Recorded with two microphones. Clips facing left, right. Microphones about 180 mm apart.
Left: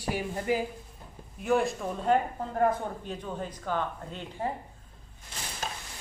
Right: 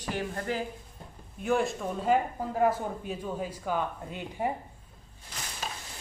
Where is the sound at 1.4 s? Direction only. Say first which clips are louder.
Left 1 dB; centre (ahead or behind).